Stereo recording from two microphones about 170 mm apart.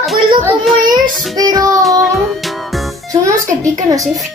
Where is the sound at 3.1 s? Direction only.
20° right (ahead or behind).